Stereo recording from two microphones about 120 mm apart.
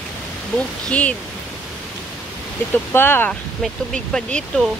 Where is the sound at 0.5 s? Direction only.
10° left (ahead or behind).